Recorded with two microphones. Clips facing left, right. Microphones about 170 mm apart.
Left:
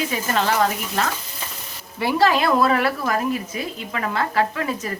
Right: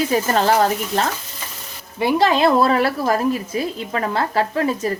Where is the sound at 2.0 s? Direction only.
20° right (ahead or behind).